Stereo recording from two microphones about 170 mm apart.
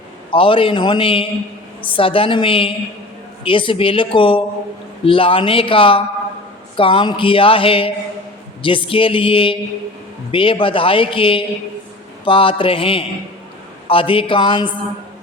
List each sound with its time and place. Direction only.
0.3 s speech: 30° left (ahead or behind)